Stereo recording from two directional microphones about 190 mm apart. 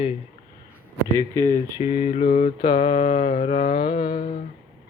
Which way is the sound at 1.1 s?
15° left (ahead or behind).